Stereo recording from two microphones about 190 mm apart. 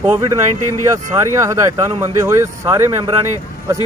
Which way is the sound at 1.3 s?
15° right (ahead or behind).